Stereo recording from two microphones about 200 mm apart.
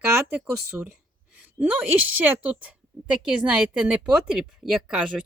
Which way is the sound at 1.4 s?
5° right (ahead or behind).